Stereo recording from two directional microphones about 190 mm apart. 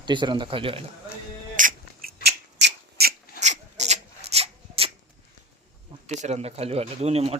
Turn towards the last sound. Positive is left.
turn(degrees=-35)  # may be behind; listen again after turning